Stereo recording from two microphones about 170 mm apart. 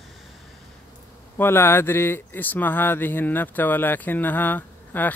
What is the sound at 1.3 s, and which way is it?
Speech, 15° left (ahead or behind).